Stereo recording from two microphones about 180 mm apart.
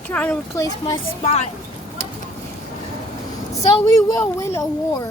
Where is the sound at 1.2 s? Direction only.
35° left (ahead or behind).